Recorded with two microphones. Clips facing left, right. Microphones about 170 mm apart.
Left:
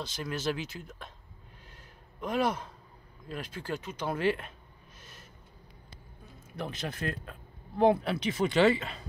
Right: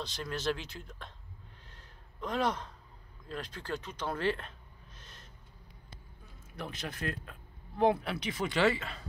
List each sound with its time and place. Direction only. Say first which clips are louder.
0.0 s speech: left 2 dB; 5° left (ahead or behind)
1.7 s a sound: left 3 dB; 10° left (ahead or behind)
3.3 s speech: left 2 dB; 10° left (ahead or behind)
6.5 s speech: left 4 dB; 25° left (ahead or behind)